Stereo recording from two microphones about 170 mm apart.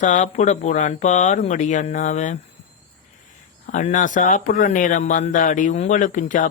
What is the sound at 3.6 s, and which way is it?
Speech, 45° left (ahead or behind).